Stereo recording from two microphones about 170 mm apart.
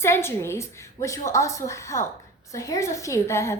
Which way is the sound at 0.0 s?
15° left (ahead or behind).